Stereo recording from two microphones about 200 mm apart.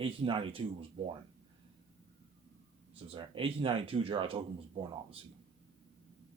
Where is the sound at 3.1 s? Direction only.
25° right (ahead or behind).